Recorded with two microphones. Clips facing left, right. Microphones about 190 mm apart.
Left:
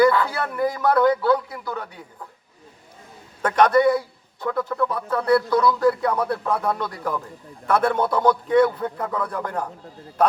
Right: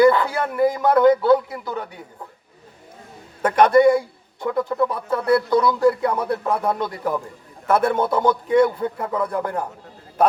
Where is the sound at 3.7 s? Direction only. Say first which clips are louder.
Right 4 dB; 10° right (ahead or behind).